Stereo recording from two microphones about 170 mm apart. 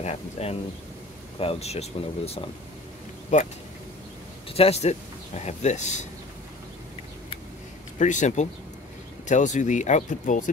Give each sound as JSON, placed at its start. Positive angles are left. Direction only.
{"t": 0.0, "sound": "speech", "side_deg": 35}
{"t": 8.0, "sound": "speech", "side_deg": 45}